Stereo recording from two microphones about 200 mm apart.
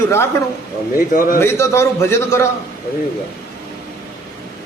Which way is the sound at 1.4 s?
15° left (ahead or behind).